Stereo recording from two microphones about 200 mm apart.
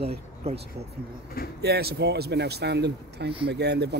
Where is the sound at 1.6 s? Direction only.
55° right (ahead or behind).